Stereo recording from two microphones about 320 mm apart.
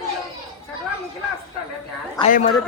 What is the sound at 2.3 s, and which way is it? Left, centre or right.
Speech, left.